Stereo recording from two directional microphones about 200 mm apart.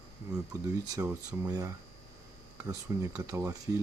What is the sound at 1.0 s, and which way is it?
Speech, 15° right (ahead or behind).